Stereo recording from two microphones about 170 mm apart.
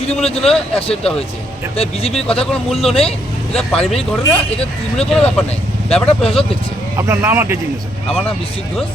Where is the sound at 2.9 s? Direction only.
35° left (ahead or behind).